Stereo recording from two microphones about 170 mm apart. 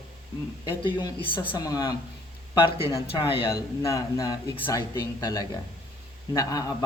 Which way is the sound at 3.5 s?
20° left (ahead or behind).